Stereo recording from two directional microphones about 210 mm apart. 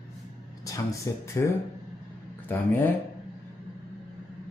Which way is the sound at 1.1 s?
15° left (ahead or behind).